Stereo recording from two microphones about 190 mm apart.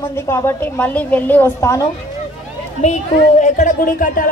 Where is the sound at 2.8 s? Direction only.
40° left (ahead or behind).